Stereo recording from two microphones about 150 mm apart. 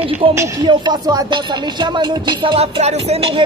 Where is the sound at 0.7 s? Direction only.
25° right (ahead or behind).